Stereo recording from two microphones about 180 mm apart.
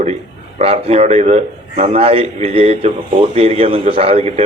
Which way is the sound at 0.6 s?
35° right (ahead or behind).